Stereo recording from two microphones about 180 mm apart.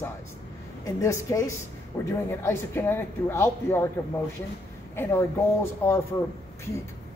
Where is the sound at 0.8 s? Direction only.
15° left (ahead or behind).